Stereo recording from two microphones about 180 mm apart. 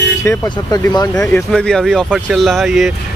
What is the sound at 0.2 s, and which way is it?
Speech, 15° left (ahead or behind).